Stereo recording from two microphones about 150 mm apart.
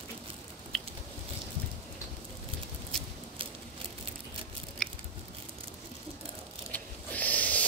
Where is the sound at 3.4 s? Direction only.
35° right (ahead or behind).